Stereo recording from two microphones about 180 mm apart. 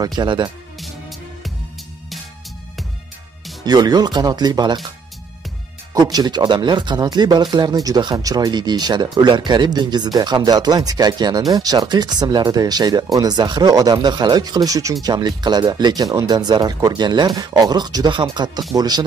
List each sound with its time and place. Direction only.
0.0 s speech: 25° right (ahead or behind)
3.6 s speech: 20° right (ahead or behind)
5.9 s speech: 20° right (ahead or behind)